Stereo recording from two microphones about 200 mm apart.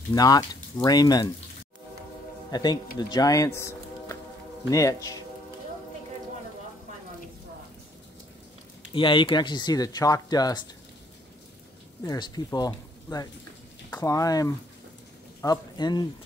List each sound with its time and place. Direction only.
0.1 s speech: 20° left (ahead or behind)
2.5 s speech: 20° left (ahead or behind)
8.9 s speech: 25° left (ahead or behind)
12.0 s speech: 20° left (ahead or behind)